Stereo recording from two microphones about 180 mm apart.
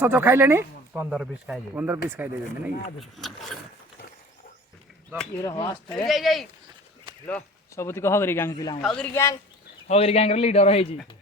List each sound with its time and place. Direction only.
0.0 s speech: 10° right (ahead or behind)
1.1 s speech: centre (ahead or behind)
3.0 s speech: centre (ahead or behind)
5.4 s speech: 20° left (ahead or behind)
6.1 s speech: centre (ahead or behind)
7.3 s speech: 10° left (ahead or behind)
8.8 s speech: 5° left (ahead or behind)
9.9 s a man's voice: 35° left (ahead or behind)